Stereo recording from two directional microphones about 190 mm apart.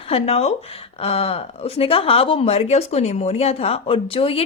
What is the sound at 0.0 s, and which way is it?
A woman's voice, 30° left (ahead or behind).